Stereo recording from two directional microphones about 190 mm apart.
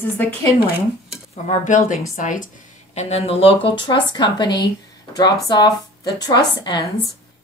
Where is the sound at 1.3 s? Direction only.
40° left (ahead or behind).